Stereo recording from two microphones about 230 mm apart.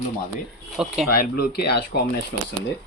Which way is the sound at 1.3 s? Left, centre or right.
Left.